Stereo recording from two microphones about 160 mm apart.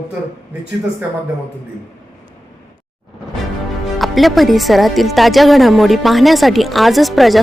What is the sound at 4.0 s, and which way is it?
Speech, centre (ahead or behind).